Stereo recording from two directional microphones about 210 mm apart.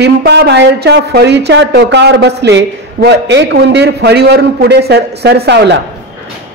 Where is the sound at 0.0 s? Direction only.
50° right (ahead or behind).